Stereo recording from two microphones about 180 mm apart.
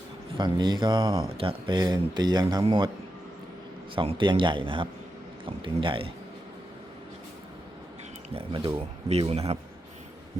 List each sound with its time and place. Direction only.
0.3 s speech: 25° right (ahead or behind)
3.9 s speech: 25° right (ahead or behind)
8.4 s speech: 30° right (ahead or behind)